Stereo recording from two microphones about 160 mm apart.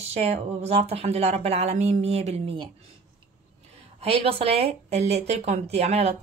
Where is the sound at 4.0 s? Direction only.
35° right (ahead or behind).